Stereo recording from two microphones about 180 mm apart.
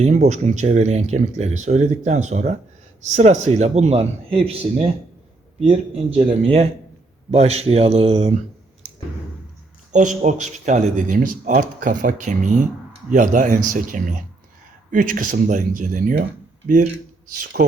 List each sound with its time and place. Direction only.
0.0 s speech: 40° right (ahead or behind)
9.9 s speech: 45° right (ahead or behind)